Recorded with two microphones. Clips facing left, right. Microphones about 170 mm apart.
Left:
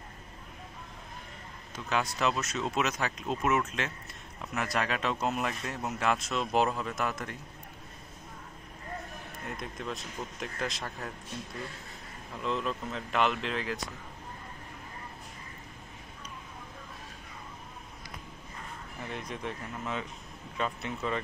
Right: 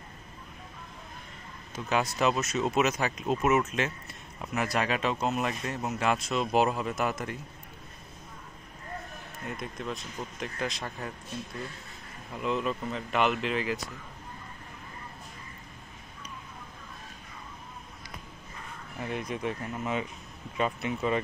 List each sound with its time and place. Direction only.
1.9 s speech: 15° right (ahead or behind)
9.4 s speech: centre (ahead or behind)
12.4 s speech: 5° right (ahead or behind)
19.0 s speech: 10° right (ahead or behind)